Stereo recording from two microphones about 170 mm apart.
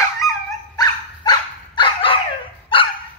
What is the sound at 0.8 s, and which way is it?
Dog, 25° left (ahead or behind).